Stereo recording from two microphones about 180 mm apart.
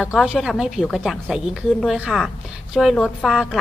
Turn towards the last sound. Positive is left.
turn(degrees=0)  # may be behind; listen again after turning